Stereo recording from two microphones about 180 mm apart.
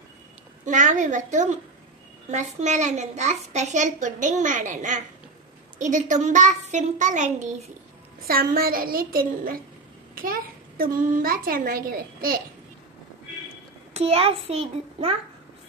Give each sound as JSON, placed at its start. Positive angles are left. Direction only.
{"t": 0.7, "sound": "a child's voice", "side_deg": -45}
{"t": 8.3, "sound": "a child's voice", "side_deg": -55}
{"t": 13.9, "sound": "a woman's voice", "side_deg": -35}